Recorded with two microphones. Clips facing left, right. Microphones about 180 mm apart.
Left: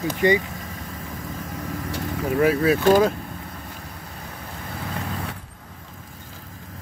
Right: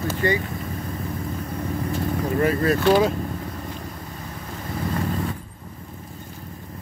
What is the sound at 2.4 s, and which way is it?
Speech, 5° left (ahead or behind).